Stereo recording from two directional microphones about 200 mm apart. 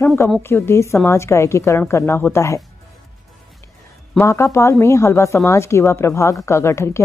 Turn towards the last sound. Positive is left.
turn(degrees=15)  # may be behind; listen again after turning